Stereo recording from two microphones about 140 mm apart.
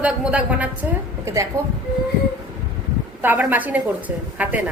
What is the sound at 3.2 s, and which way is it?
A woman's voice, 15° right (ahead or behind).